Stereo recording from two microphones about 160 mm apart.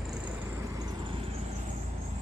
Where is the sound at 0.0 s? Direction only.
5° right (ahead or behind); by 1.3 s 35° right (ahead or behind).